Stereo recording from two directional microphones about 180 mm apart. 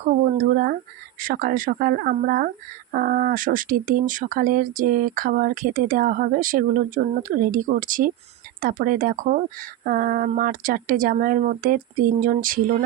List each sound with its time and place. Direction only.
0.0 s speech: 50° right (ahead or behind)